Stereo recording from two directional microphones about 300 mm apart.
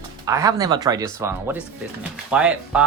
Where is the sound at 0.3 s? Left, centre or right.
Centre.